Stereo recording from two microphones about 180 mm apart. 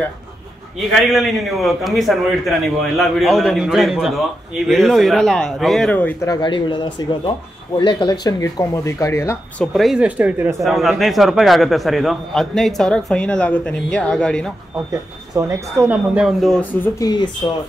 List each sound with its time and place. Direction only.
1.0 s a man's voice: centre (ahead or behind)
6.2 s speech: 25° left (ahead or behind)
9.8 s a man's voice: 5° right (ahead or behind)
14.9 s speech: 15° right (ahead or behind)
16.2 s a man's voice: centre (ahead or behind)
16.8 s speech: 20° left (ahead or behind)